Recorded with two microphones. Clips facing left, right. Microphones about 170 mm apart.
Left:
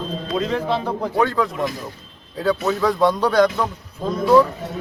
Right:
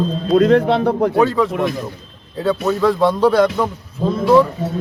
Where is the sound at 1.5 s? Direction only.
60° right (ahead or behind).